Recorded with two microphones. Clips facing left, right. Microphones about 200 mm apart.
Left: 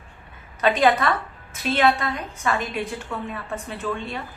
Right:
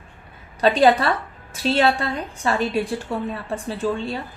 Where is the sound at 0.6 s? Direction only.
30° right (ahead or behind).